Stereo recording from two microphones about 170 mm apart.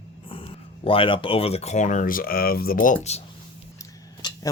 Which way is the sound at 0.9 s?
30° left (ahead or behind).